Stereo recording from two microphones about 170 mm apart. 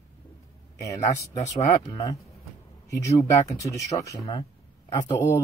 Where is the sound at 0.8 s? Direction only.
20° left (ahead or behind).